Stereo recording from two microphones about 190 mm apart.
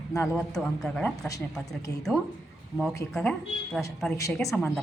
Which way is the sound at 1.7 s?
15° left (ahead or behind).